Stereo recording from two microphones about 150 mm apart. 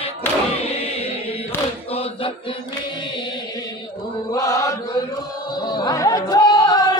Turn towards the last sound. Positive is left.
turn(degrees=25)  # may be behind; listen again after turning